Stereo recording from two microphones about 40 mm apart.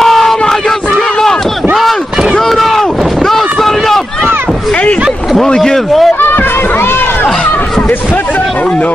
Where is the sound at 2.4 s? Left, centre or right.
Centre.